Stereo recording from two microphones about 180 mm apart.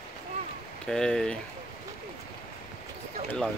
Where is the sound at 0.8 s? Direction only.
5° left (ahead or behind).